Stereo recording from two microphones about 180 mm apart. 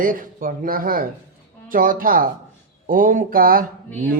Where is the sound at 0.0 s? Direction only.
50° right (ahead or behind).